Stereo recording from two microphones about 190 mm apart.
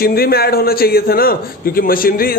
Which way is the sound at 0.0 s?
55° left (ahead or behind).